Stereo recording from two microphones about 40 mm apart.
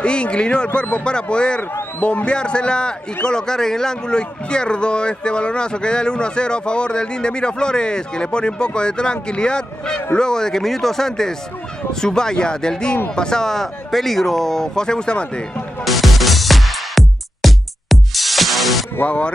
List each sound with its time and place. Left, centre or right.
0.0 s a man's voice: left
15.8 s music: centre
19.0 s speech: left